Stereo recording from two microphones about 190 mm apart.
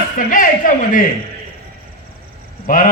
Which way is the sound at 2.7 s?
45° left (ahead or behind).